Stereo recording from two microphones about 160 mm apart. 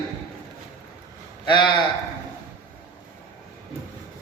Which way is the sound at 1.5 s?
30° left (ahead or behind).